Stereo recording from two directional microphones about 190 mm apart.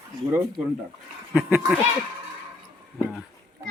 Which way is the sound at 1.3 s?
5° right (ahead or behind).